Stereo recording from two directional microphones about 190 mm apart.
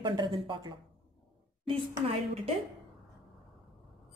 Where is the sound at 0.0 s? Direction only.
25° right (ahead or behind).